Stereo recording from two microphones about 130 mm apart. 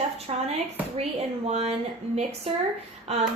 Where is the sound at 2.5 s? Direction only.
50° right (ahead or behind).